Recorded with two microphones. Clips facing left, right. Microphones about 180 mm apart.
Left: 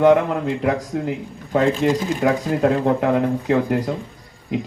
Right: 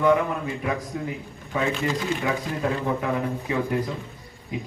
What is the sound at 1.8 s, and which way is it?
Speech, 55° left (ahead or behind).